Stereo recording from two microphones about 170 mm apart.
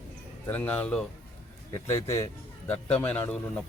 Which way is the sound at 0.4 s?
10° left (ahead or behind).